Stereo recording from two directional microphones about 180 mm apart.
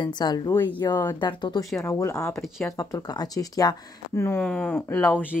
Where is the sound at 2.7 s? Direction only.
20° left (ahead or behind).